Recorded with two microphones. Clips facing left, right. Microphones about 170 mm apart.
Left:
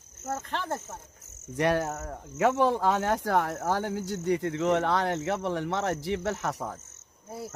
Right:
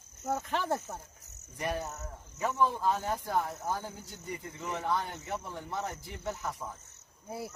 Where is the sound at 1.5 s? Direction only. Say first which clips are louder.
Left 9 dB; 75° left (ahead or behind).